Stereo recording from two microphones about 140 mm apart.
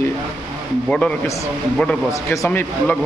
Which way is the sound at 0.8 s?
5° left (ahead or behind).